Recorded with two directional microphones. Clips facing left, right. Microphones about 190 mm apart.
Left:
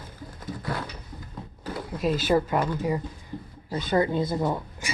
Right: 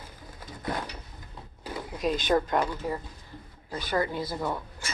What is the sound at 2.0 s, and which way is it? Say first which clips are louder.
Speech: left 2 dB; 5° left (ahead or behind).